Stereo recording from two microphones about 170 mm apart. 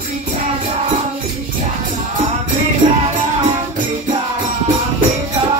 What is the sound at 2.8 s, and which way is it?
Music, 25° right (ahead or behind).